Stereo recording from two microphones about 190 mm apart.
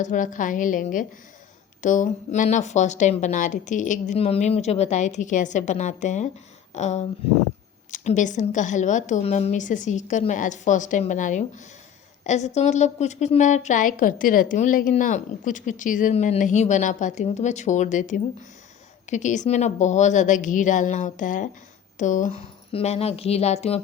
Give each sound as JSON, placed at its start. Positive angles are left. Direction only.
{"t": 0.0, "sound": "a woman's voice", "side_deg": 40}